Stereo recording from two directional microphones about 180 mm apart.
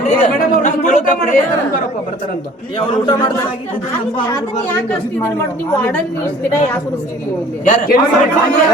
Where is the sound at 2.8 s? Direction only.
25° left (ahead or behind).